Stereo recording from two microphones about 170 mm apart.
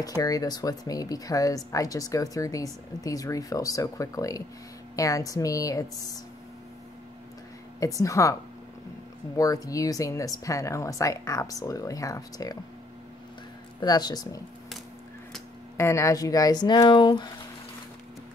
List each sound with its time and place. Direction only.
0.0 s speech: 20° left (ahead or behind)
7.8 s speech: 20° left (ahead or behind)
9.4 s speech: 20° left (ahead or behind)
13.7 s speech: 25° left (ahead or behind)
15.8 s speech: 15° left (ahead or behind)